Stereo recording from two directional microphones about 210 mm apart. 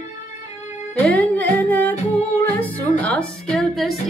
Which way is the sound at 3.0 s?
5° left (ahead or behind).